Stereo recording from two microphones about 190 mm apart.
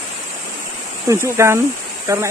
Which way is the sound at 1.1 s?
15° right (ahead or behind).